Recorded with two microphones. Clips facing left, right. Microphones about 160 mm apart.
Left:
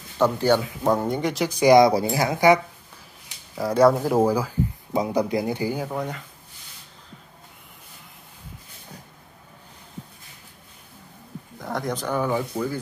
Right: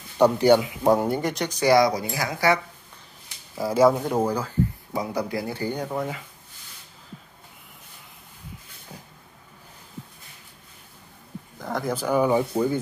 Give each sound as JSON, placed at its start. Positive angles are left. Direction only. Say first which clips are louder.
{"t": 0.2, "sound": "speech", "louder": "right 3 dB", "side_deg": -15}
{"t": 1.6, "sound": "speech", "louder": "left 4 dB", "side_deg": 20}
{"t": 3.5, "sound": "speech", "louder": "left 1 dB", "side_deg": 0}
{"t": 4.9, "sound": "speech", "louder": "left 6 dB", "side_deg": 20}
{"t": 11.5, "sound": "speech", "louder": "even", "side_deg": 0}